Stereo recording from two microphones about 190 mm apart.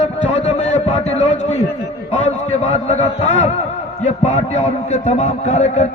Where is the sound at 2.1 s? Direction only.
35° left (ahead or behind).